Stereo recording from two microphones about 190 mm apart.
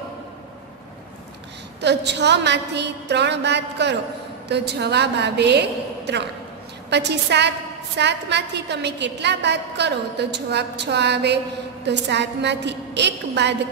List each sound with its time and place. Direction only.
1.8 s a woman's voice: 65° right (ahead or behind)